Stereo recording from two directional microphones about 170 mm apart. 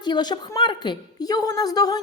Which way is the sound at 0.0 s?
25° left (ahead or behind).